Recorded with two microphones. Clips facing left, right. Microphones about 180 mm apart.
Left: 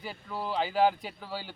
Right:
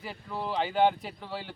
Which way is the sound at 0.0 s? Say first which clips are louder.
Right 1 dB; centre (ahead or behind).